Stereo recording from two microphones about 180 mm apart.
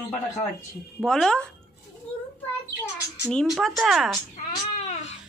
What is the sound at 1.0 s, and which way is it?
Speech, 5° left (ahead or behind).